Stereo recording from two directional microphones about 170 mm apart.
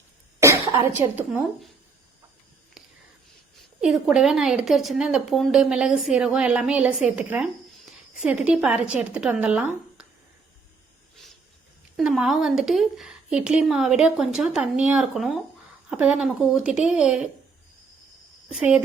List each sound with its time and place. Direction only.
0.3 s cough: 15° right (ahead or behind)
3.8 s speech: 5° right (ahead or behind)
11.9 s speech: centre (ahead or behind)
18.4 s speech: 5° right (ahead or behind)